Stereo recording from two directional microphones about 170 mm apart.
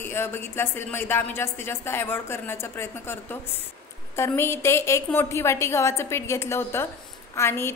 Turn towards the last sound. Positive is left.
turn(degrees=15)  # may be behind; listen again after turning